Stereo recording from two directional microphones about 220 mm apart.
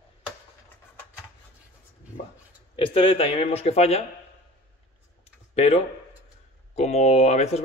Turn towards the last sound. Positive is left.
turn(degrees=30)  # may be behind; listen again after turning